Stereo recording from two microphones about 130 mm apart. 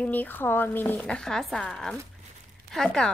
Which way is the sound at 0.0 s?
15° left (ahead or behind).